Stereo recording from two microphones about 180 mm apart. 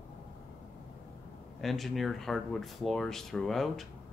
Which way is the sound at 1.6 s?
Centre (ahead or behind).